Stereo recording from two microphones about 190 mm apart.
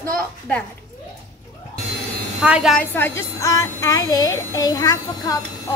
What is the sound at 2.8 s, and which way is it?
Speech, 10° left (ahead or behind).